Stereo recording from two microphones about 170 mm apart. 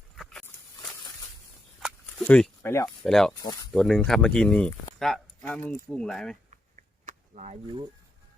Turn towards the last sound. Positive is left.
turn(degrees=-45)  # may be behind; listen again after turning